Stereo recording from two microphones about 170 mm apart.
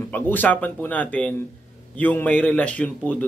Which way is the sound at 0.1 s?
10° left (ahead or behind).